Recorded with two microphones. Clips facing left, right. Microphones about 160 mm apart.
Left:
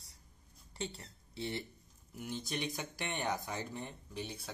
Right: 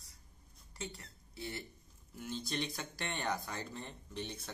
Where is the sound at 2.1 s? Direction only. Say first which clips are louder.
Even; 15° left (ahead or behind).